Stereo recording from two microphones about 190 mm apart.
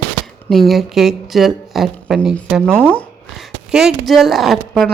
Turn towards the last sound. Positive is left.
turn(degrees=0)  # may be behind; listen again after turning